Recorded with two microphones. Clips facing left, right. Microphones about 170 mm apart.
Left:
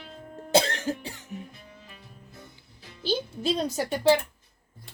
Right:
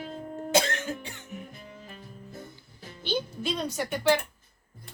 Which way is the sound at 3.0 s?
35° left (ahead or behind).